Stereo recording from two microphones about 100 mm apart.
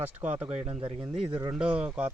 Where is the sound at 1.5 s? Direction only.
10° right (ahead or behind).